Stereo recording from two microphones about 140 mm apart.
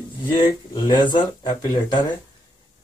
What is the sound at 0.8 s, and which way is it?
A man's voice, 35° left (ahead or behind).